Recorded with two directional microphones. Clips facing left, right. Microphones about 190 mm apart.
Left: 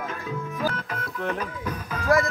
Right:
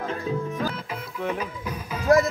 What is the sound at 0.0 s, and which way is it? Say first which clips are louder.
Music: right 4 dB; 30° right (ahead or behind).